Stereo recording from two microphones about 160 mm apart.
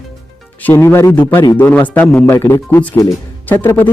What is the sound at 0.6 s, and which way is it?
Speech, 15° left (ahead or behind).